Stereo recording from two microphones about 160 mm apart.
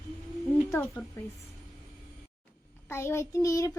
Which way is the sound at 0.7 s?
15° left (ahead or behind).